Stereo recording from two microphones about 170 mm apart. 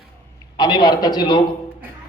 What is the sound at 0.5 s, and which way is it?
Speech, 25° left (ahead or behind).